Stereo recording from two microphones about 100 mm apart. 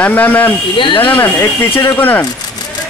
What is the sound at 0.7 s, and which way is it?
Speech, 55° left (ahead or behind).